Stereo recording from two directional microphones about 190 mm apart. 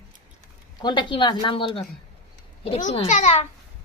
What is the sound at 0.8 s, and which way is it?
A woman's voice, 25° left (ahead or behind).